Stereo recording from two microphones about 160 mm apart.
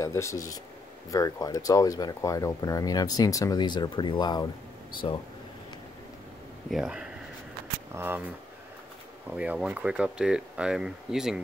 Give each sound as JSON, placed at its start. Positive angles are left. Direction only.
{"t": 0.0, "sound": "speech", "side_deg": 15}
{"t": 6.7, "sound": "speech", "side_deg": -5}
{"t": 9.3, "sound": "speech", "side_deg": -10}